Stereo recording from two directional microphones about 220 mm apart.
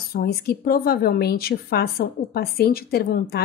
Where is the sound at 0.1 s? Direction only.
45° left (ahead or behind).